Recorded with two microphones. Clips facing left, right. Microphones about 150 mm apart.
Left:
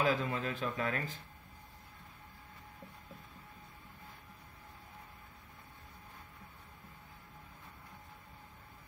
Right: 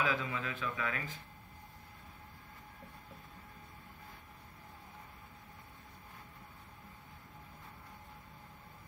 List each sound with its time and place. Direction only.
0.0 s speech: 40° left (ahead or behind)